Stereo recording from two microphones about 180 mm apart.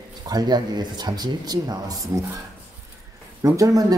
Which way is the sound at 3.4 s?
20° right (ahead or behind).